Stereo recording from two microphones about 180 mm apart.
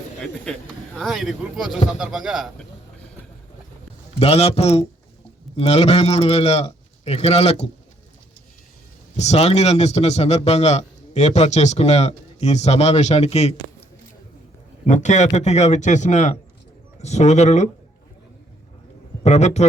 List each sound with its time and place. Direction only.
0.9 s speech: centre (ahead or behind)
4.2 s a man's voice: 35° left (ahead or behind)
9.1 s a man's voice: 35° left (ahead or behind)
14.8 s a man's voice: 40° left (ahead or behind)
19.2 s a man's voice: 40° left (ahead or behind)